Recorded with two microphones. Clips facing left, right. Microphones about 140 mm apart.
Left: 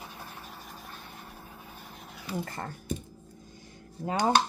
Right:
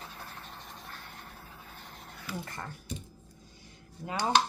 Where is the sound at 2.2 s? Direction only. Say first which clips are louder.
Left 5 dB; 25° left (ahead or behind).